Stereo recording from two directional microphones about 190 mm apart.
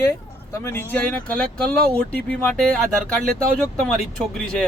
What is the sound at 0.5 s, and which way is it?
Speech, 15° left (ahead or behind).